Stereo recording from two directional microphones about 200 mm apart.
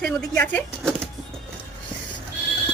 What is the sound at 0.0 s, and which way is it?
Speech, 5° left (ahead or behind).